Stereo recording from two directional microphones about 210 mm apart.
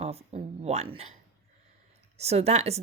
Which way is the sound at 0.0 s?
30° right (ahead or behind).